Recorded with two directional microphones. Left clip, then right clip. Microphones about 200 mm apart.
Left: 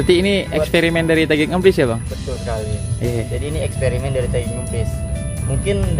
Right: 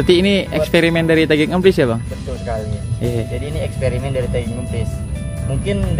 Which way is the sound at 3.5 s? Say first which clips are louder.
Left 1 dB; 15° left (ahead or behind).